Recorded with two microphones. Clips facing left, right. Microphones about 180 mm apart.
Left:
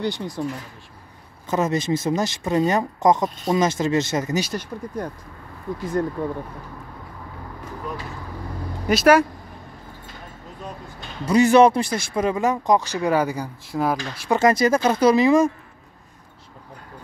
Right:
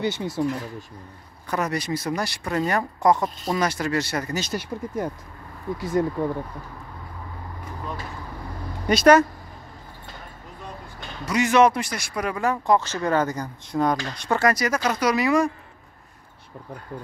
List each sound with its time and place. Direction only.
0.2 s speech: 15° right (ahead or behind)
1.5 s speech: 25° left (ahead or behind)
4.5 s speech: 10° right (ahead or behind)
6.2 s speech: 15° right (ahead or behind)
8.8 s speech: 5° left (ahead or behind)
11.2 s speech: 35° left (ahead or behind); by 14.4 s 5° left (ahead or behind)
14.4 s speech: 25° left (ahead or behind)